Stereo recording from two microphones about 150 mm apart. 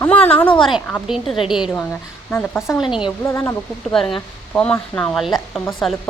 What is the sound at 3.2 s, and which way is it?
Speech, 20° left (ahead or behind).